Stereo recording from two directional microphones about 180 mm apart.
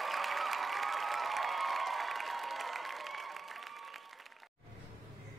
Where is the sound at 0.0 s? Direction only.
Centre (ahead or behind).